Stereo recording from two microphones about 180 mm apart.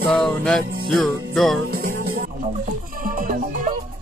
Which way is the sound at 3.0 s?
50° right (ahead or behind).